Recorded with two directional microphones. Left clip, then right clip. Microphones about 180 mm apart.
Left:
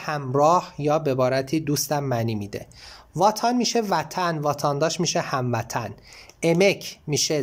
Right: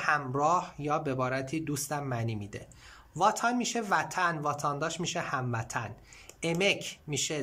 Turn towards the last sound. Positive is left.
turn(degrees=25)  # may be behind; listen again after turning